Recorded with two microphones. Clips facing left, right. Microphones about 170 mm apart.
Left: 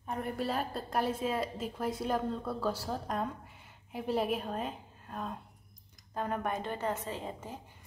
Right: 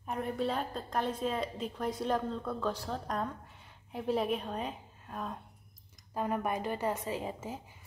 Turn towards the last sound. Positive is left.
turn(degrees=-5)  # may be behind; listen again after turning